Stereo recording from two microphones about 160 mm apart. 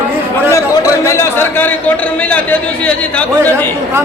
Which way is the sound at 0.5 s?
20° left (ahead or behind).